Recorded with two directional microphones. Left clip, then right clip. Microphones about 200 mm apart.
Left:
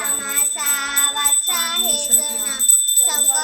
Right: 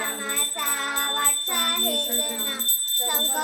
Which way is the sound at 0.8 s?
10° right (ahead or behind).